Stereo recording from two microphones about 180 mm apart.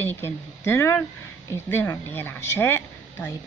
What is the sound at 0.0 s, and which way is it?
A woman's voice, 15° left (ahead or behind).